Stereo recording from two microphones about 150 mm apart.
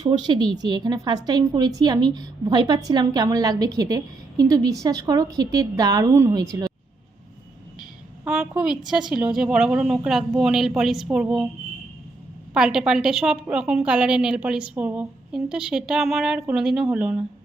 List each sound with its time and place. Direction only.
0.0 s speech: 30° right (ahead or behind)
7.8 s a woman's voice: 5° right (ahead or behind)
12.5 s a woman's voice: 5° right (ahead or behind)